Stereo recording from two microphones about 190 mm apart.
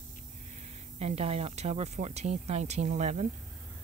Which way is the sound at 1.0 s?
35° right (ahead or behind).